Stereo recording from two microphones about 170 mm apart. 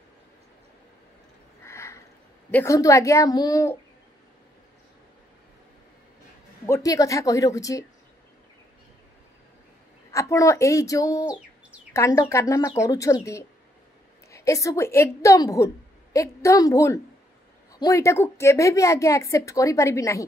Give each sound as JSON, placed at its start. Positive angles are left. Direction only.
{"t": 1.7, "sound": "a sound", "side_deg": 15}
{"t": 2.5, "sound": "a woman's voice", "side_deg": 15}
{"t": 6.6, "sound": "a woman's voice", "side_deg": 15}
{"t": 10.1, "sound": "a woman's voice", "side_deg": 20}
{"t": 11.1, "sound": "bird", "side_deg": -10}
{"t": 11.9, "sound": "a woman's voice", "side_deg": 15}